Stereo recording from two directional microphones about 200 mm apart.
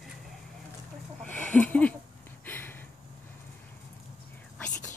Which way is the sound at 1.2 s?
5° left (ahead or behind).